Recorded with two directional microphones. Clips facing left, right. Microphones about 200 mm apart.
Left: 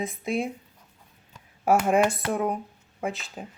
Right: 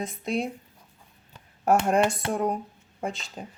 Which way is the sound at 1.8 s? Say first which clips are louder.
Left 1 dB; 5° left (ahead or behind).